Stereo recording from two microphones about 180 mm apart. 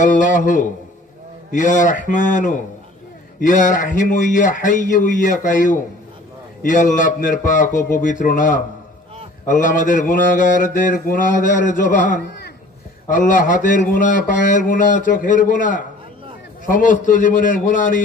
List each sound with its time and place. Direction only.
0.0 s mantra: 45° left (ahead or behind)